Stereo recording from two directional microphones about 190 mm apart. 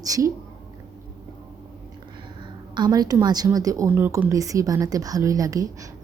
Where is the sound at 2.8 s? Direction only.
20° right (ahead or behind).